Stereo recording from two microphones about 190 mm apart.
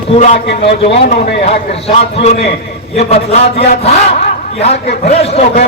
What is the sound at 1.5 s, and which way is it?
A man's voice, 35° left (ahead or behind).